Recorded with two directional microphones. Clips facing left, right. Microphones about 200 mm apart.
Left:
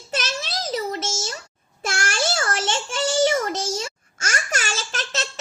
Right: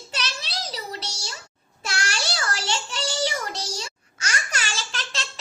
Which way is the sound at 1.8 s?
50° left (ahead or behind).